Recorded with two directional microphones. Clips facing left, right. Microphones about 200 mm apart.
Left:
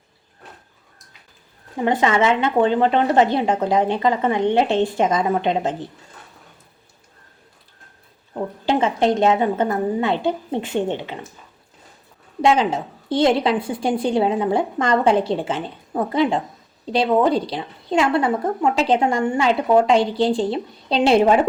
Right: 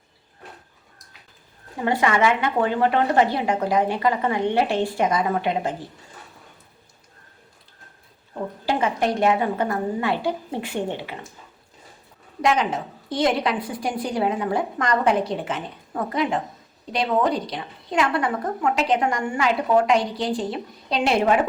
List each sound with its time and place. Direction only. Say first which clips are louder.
1.8 s a woman's voice: left 2 dB; 20° left (ahead or behind)
8.6 s a woman's voice: left 4 dB; 25° left (ahead or behind)
12.4 s a woman's voice: left 4 dB; 30° left (ahead or behind)